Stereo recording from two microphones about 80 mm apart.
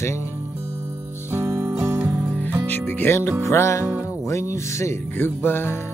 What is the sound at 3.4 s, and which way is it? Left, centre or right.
Music, left.